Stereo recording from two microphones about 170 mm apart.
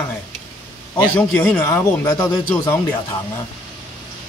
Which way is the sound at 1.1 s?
10° left (ahead or behind).